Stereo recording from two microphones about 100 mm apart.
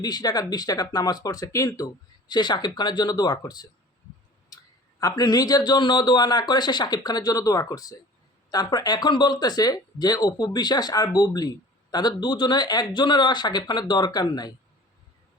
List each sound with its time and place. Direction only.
0.0 s speech: 40° left (ahead or behind)